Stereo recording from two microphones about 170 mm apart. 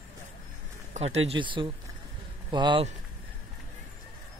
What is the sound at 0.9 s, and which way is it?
Speech, 40° right (ahead or behind).